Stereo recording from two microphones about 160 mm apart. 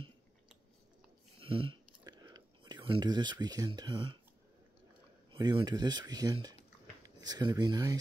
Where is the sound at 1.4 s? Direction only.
35° right (ahead or behind).